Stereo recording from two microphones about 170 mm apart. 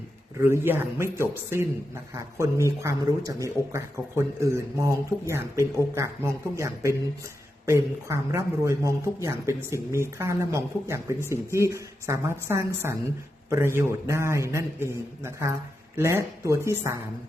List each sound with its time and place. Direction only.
0.4 s a man's voice: 15° right (ahead or behind)